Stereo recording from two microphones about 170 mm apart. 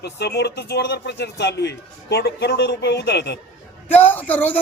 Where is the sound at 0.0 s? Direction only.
75° left (ahead or behind).